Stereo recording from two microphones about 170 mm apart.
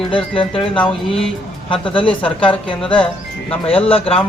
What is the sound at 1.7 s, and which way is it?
Speech, 30° left (ahead or behind).